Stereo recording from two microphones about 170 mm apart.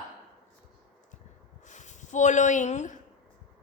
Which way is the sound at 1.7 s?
45° left (ahead or behind).